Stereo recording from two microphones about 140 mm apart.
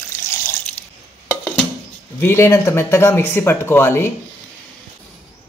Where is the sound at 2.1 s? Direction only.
20° left (ahead or behind).